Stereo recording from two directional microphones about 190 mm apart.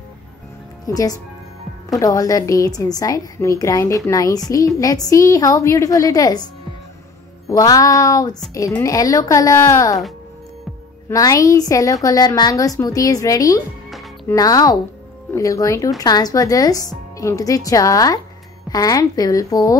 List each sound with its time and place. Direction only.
0.8 s a woman's voice: 20° left (ahead or behind)
7.4 s a woman's voice: 20° left (ahead or behind)
11.1 s a woman's voice: 15° left (ahead or behind)